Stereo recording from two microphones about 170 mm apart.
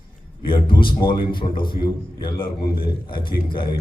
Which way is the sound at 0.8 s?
30° left (ahead or behind).